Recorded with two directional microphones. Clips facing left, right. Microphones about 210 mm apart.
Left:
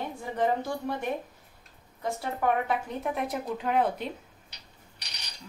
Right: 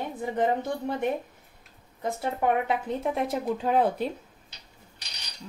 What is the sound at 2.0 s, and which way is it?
Speech, 25° right (ahead or behind).